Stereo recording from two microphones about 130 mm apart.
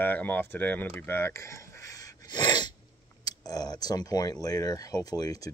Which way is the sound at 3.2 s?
30° left (ahead or behind).